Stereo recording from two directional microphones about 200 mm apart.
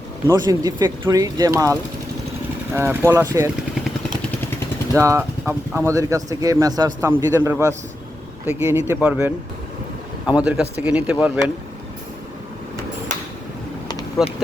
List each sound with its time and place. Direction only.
0.3 s speech: 20° right (ahead or behind)
4.9 s speech: 15° right (ahead or behind)
14.2 s speech: centre (ahead or behind)